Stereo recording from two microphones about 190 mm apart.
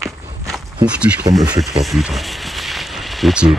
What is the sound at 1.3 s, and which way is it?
Speech, 20° right (ahead or behind).